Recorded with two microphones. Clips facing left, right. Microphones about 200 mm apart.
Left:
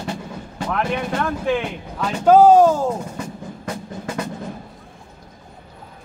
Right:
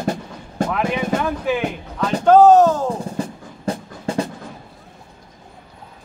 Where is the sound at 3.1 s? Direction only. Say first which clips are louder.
Right 3 dB; 30° right (ahead or behind).